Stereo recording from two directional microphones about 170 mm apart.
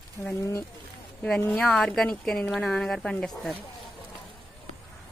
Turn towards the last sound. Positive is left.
turn(degrees=5)  # may be behind; listen again after turning